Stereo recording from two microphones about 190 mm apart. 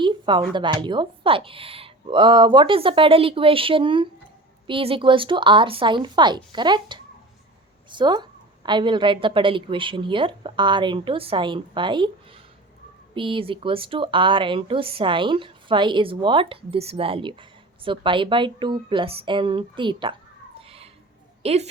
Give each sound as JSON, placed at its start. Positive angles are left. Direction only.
{"t": 0.0, "sound": "a woman's voice", "side_deg": -25}
{"t": 20.6, "sound": "a sound", "side_deg": -30}
{"t": 21.4, "sound": "a woman's voice", "side_deg": -35}